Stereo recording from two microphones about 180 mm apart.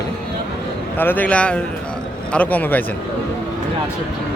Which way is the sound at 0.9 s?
10° left (ahead or behind).